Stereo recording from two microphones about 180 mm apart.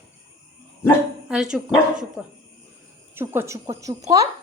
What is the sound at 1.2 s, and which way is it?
A woman's voice, 5° right (ahead or behind).